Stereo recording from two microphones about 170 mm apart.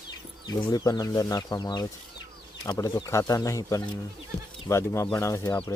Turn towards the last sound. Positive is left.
turn(degrees=15)  # may be behind; listen again after turning